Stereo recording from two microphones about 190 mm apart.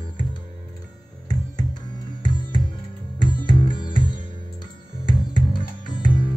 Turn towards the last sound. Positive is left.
turn(degrees=25)  # may be behind; listen again after turning